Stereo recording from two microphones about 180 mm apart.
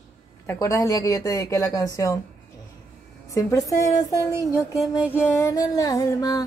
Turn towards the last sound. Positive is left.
turn(degrees=20)  # may be behind; listen again after turning